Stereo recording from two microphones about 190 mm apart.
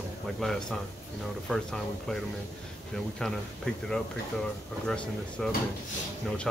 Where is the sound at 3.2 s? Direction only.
5° left (ahead or behind).